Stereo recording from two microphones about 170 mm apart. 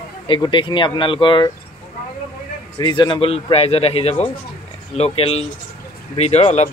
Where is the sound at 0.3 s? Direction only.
30° left (ahead or behind).